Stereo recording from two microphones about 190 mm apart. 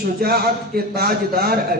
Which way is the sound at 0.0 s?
55° right (ahead or behind).